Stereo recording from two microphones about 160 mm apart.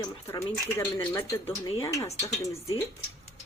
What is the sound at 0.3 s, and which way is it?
Stir, 20° left (ahead or behind).